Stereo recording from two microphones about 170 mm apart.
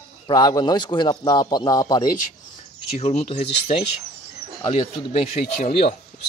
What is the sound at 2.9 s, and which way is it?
Speech, 40° left (ahead or behind).